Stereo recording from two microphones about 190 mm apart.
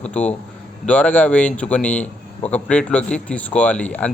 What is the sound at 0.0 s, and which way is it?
Speech, 5° left (ahead or behind).